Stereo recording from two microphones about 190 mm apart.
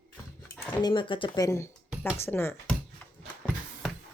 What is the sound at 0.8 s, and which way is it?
Speech, 25° left (ahead or behind).